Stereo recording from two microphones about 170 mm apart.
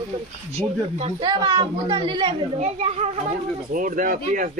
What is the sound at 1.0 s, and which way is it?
A woman's voice, 30° right (ahead or behind).